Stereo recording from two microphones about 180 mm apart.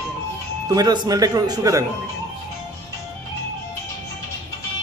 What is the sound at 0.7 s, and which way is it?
Speech, 20° right (ahead or behind).